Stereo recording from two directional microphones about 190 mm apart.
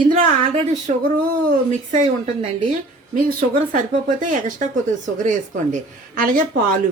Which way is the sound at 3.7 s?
40° right (ahead or behind).